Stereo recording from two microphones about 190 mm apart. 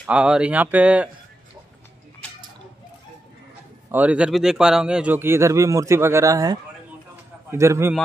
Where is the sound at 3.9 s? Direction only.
5° right (ahead or behind).